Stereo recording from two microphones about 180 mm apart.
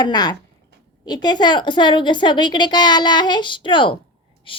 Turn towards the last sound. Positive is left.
turn(degrees=30)  # may be behind; listen again after turning